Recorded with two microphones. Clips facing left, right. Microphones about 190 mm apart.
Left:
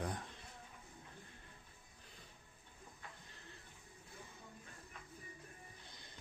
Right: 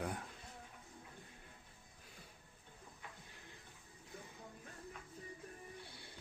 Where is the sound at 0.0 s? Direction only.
5° right (ahead or behind).